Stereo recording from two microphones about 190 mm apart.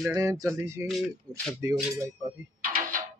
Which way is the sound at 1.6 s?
15° right (ahead or behind).